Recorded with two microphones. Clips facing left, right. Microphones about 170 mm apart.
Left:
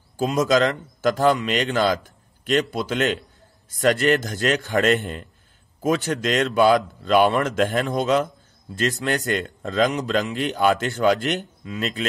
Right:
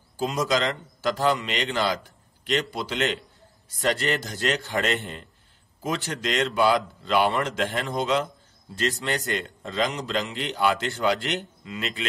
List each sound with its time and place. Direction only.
0.2 s speech: 50° left (ahead or behind)